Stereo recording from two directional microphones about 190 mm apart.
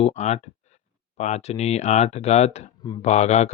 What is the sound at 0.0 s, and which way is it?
Speech, 35° left (ahead or behind).